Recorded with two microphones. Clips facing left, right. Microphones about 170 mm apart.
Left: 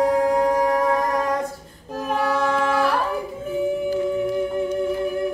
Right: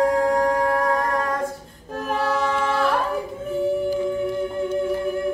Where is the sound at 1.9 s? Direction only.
Centre (ahead or behind).